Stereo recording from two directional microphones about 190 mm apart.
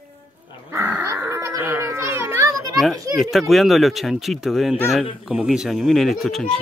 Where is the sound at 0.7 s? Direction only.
10° right (ahead or behind).